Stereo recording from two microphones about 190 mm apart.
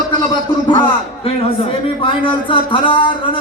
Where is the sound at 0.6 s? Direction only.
25° left (ahead or behind).